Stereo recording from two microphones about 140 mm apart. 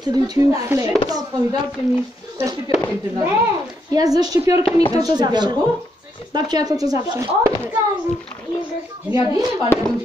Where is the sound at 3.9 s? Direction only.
25° right (ahead or behind).